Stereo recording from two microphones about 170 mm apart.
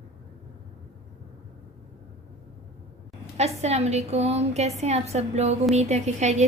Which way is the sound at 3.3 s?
40° right (ahead or behind).